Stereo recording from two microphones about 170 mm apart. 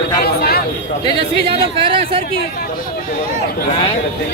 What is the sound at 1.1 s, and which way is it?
Speech, 30° right (ahead or behind).